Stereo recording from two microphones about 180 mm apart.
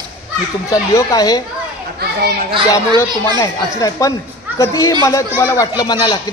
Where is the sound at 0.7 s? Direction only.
20° left (ahead or behind).